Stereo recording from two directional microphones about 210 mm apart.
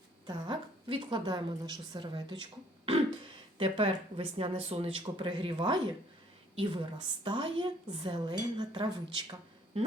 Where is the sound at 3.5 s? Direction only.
25° right (ahead or behind).